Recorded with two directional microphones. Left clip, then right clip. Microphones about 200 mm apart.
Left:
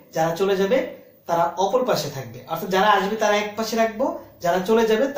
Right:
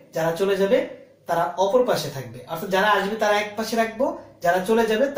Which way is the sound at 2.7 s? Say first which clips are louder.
Left 2 dB; 20° left (ahead or behind).